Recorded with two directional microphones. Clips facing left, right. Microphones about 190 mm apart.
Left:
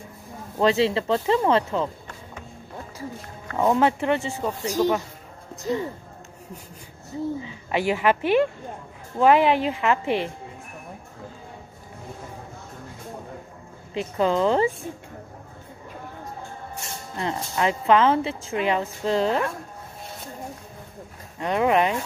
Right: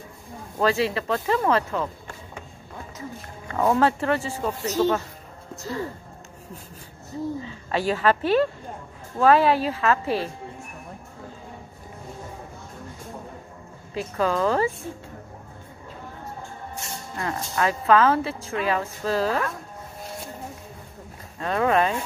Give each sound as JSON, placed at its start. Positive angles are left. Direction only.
{"t": 0.6, "sound": "speech", "side_deg": 25}
{"t": 3.5, "sound": "a woman's voice", "side_deg": 15}
{"t": 7.1, "sound": "a woman's voice", "side_deg": 15}
{"t": 13.9, "sound": "speech", "side_deg": 20}
{"t": 17.2, "sound": "speech", "side_deg": 20}
{"t": 21.4, "sound": "a woman's voice", "side_deg": 20}